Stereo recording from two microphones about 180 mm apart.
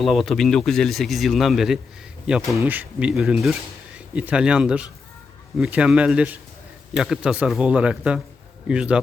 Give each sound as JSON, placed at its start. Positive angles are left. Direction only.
{"t": 0.0, "sound": "speech", "side_deg": 0}